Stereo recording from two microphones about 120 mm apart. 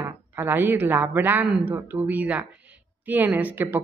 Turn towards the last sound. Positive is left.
turn(degrees=-15)  # may be behind; listen again after turning